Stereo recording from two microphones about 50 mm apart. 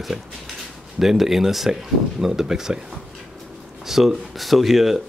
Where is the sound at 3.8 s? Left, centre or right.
Centre.